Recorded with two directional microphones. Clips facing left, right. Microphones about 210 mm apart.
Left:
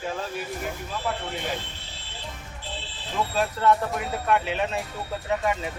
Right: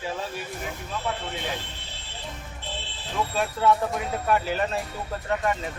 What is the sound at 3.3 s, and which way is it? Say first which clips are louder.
Speech: even; centre (ahead or behind).